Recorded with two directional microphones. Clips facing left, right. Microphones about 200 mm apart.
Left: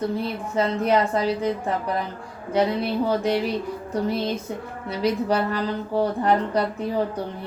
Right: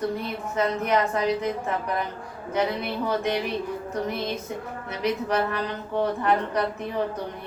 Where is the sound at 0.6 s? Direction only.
30° left (ahead or behind).